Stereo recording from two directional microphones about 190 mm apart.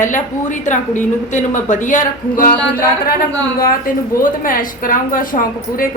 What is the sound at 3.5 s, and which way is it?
A woman's voice, 50° left (ahead or behind).